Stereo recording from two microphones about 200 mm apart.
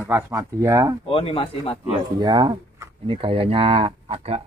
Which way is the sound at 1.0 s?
25° left (ahead or behind).